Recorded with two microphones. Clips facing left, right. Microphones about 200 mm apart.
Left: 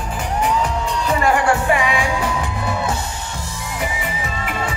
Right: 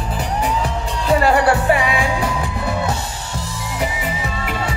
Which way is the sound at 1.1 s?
35° right (ahead or behind).